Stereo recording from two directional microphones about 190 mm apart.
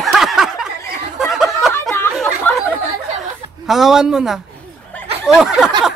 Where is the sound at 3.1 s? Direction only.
Centre (ahead or behind).